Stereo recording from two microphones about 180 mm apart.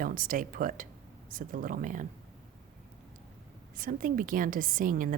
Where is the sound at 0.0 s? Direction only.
50° right (ahead or behind).